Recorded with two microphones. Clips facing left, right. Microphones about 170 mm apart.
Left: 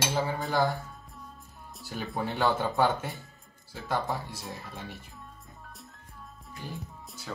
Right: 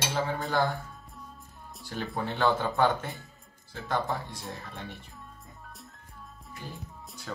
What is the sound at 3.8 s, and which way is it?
Speech, 10° left (ahead or behind).